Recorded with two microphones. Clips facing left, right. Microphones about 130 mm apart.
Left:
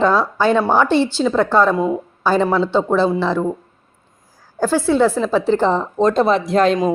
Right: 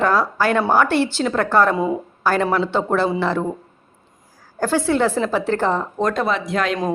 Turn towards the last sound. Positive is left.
turn(degrees=35)  # may be behind; listen again after turning